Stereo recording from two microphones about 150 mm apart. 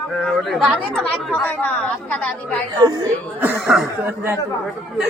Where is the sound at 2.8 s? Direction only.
25° right (ahead or behind).